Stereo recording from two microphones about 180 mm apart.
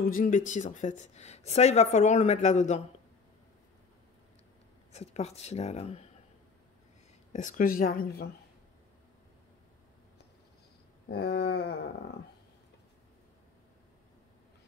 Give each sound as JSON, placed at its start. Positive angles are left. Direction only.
{"t": 0.1, "sound": "speech", "side_deg": 50}
{"t": 4.9, "sound": "speech", "side_deg": 35}
{"t": 7.3, "sound": "speech", "side_deg": 45}
{"t": 11.1, "sound": "a sound", "side_deg": 65}